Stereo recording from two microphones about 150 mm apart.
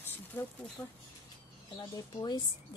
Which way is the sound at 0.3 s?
10° left (ahead or behind).